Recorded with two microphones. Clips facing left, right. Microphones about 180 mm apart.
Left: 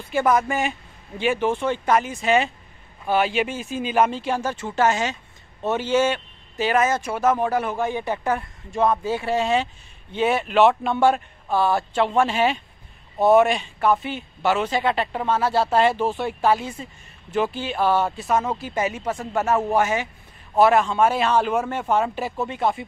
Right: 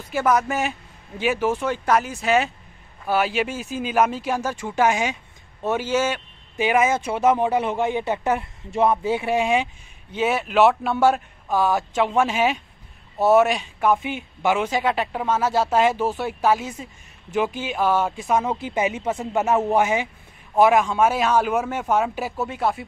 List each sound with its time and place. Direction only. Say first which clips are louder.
0.1 s a man's voice: left 1 dB; centre (ahead or behind)